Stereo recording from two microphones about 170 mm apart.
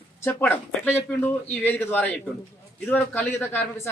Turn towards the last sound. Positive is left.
turn(degrees=10)  # may be behind; listen again after turning